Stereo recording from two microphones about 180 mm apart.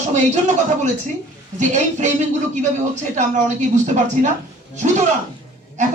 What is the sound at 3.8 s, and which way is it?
Speech, 40° right (ahead or behind).